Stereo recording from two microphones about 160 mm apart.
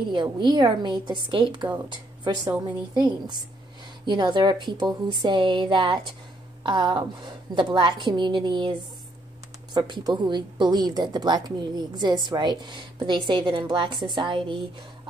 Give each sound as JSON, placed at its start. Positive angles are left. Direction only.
{"t": 0.1, "sound": "speech", "side_deg": -30}
{"t": 9.8, "sound": "speech", "side_deg": -30}